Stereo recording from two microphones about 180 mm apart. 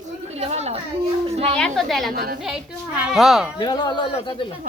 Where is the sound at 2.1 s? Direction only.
60° right (ahead or behind).